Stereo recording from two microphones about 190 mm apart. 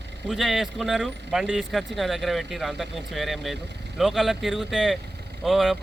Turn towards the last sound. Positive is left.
turn(degrees=0)  # may be behind; listen again after turning